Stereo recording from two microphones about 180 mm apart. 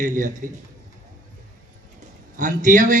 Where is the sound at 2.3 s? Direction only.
45° right (ahead or behind).